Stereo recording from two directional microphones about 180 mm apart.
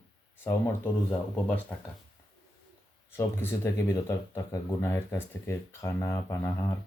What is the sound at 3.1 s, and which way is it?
Speech, 15° left (ahead or behind).